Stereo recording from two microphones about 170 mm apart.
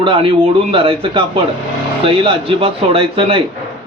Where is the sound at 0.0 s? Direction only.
35° right (ahead or behind).